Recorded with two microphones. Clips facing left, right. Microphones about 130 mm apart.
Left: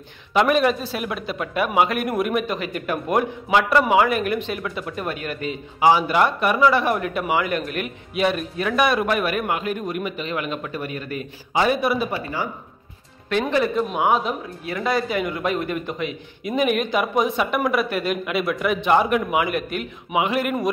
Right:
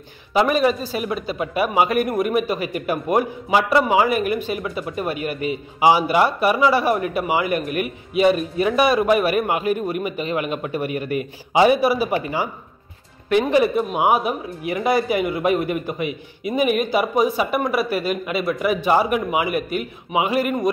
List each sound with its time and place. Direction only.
0.3 s a man's voice: centre (ahead or behind)
12.2 s a man's voice: 15° right (ahead or behind); by 20.7 s centre (ahead or behind)